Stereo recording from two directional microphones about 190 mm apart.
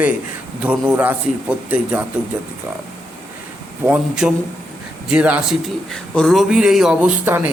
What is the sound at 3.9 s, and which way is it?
A man's voice, 5° right (ahead or behind).